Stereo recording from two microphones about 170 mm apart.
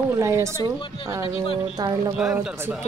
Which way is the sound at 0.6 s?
30° left (ahead or behind).